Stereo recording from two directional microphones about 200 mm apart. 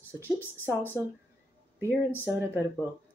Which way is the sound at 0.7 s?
10° right (ahead or behind).